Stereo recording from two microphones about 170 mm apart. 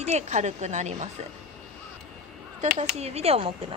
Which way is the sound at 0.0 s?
40° right (ahead or behind).